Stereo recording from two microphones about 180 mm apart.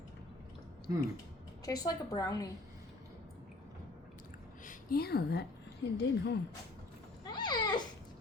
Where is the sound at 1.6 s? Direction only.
20° left (ahead or behind).